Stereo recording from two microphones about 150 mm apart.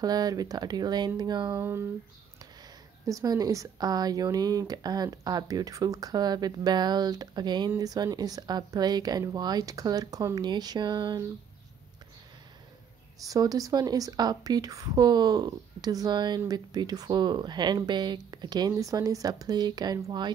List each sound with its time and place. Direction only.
0.0 s speech: 25° right (ahead or behind)
1.6 s speech: 15° right (ahead or behind)
3.1 s speech: 25° right (ahead or behind)
13.2 s speech: 25° right (ahead or behind)